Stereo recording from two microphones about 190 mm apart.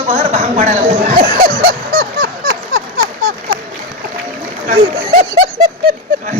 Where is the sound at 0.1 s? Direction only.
35° right (ahead or behind).